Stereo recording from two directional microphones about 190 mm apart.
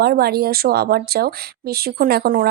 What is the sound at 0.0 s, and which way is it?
Speech, 55° right (ahead or behind).